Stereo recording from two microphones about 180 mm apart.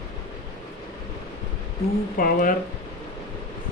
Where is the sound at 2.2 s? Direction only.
50° left (ahead or behind).